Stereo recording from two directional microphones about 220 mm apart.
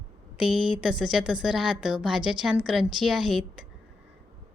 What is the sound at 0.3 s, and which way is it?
A woman's voice, 5° right (ahead or behind).